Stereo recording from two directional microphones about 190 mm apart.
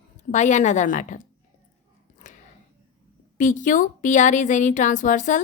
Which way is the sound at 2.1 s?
40° left (ahead or behind).